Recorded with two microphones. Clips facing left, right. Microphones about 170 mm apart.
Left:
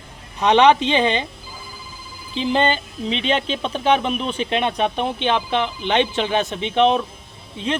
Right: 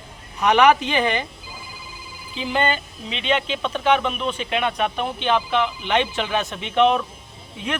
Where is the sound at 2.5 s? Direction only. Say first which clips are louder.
Left 2 dB; 25° left (ahead or behind).